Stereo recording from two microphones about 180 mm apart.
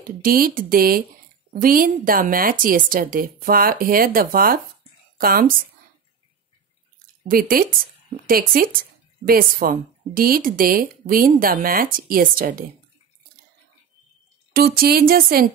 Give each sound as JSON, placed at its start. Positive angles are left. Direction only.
{"t": 0.0, "sound": "speech", "side_deg": -55}
{"t": 7.2, "sound": "speech", "side_deg": -55}
{"t": 14.5, "sound": "speech", "side_deg": -55}